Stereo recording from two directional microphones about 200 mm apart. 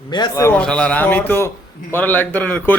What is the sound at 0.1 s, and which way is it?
A man's voice, 20° left (ahead or behind).